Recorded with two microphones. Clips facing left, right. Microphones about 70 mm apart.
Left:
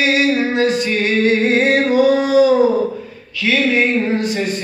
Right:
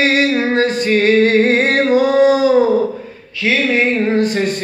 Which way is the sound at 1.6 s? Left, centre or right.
Right.